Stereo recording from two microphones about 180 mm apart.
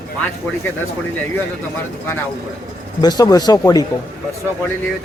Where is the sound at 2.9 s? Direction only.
20° left (ahead or behind).